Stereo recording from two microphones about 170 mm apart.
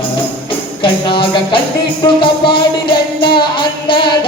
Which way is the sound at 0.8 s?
30° left (ahead or behind).